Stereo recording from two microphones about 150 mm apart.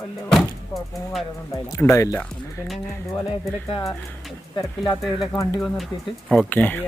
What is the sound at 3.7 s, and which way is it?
Speech, 30° left (ahead or behind).